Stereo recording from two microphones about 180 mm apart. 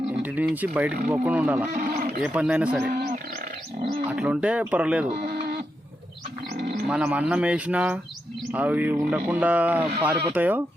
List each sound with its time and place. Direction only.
0.1 s speech: 10° right (ahead or behind)
1.7 s speech: 55° right (ahead or behind)
2.2 s speech: 5° right (ahead or behind)
2.8 s speech: 55° right (ahead or behind)
4.1 s speech: 5° right (ahead or behind)
5.2 s a sound: 60° right (ahead or behind)
6.6 s bird: 60° right (ahead or behind)
6.8 s speech: 5° right (ahead or behind)